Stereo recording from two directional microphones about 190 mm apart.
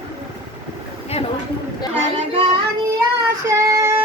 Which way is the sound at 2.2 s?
30° right (ahead or behind).